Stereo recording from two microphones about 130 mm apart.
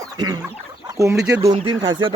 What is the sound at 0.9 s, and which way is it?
Speech, 25° right (ahead or behind).